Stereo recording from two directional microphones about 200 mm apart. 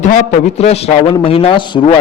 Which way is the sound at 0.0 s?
35° left (ahead or behind).